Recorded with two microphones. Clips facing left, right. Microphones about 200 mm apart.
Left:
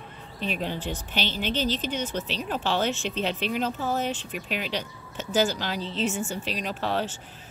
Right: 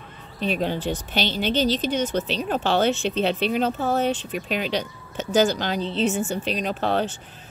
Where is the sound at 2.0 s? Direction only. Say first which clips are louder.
Right 6 dB; 75° right (ahead or behind).